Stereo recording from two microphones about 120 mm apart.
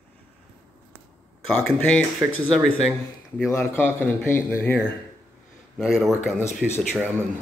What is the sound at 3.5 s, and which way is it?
Speech, 20° left (ahead or behind).